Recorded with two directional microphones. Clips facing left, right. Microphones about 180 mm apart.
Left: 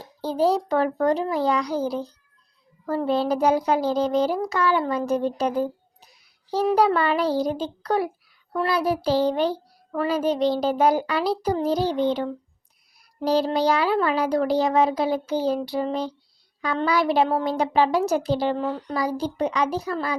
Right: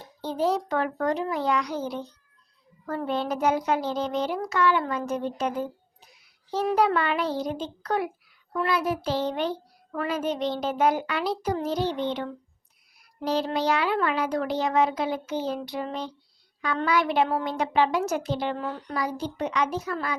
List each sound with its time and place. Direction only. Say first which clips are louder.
0.2 s a child's voice: left 4 dB; 35° left (ahead or behind)